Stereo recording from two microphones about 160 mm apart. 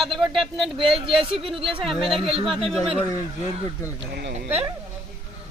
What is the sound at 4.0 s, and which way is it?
Speech, 90° right.